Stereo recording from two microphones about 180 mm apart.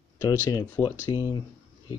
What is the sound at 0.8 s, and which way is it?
Speech, 20° left (ahead or behind).